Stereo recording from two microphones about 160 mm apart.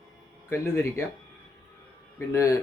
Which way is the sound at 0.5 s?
15° left (ahead or behind).